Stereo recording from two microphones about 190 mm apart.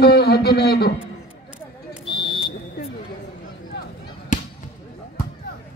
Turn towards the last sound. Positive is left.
turn(degrees=40)  # may be behind; listen again after turning